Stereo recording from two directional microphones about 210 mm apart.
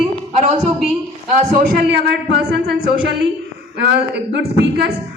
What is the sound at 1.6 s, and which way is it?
A man's voice, 45° right (ahead or behind).